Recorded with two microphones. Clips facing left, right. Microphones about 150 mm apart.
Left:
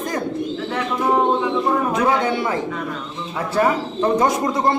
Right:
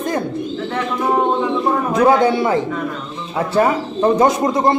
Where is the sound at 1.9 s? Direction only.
35° right (ahead or behind).